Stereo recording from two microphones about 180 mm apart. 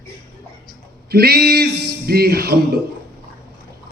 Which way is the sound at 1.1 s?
60° right (ahead or behind).